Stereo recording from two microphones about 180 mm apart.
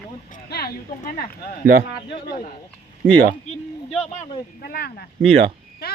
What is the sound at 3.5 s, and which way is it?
Speech, 40° left (ahead or behind).